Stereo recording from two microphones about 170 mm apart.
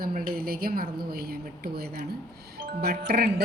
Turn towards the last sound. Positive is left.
turn(degrees=-65)  # may be behind; listen again after turning